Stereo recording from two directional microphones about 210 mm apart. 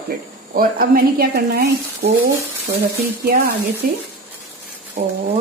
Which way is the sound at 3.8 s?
40° right (ahead or behind).